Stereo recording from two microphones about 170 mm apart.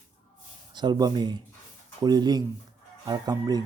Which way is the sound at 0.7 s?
25° right (ahead or behind).